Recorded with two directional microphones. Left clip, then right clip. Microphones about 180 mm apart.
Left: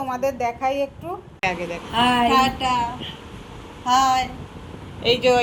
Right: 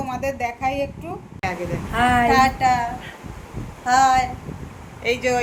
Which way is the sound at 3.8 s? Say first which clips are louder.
Right 2 dB; 15° right (ahead or behind).